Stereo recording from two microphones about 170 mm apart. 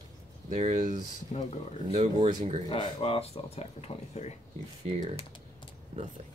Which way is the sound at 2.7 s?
35° left (ahead or behind).